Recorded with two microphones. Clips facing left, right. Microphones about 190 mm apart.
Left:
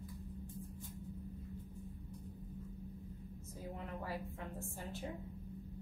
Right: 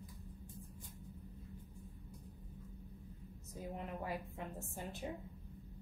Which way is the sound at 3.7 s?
20° right (ahead or behind).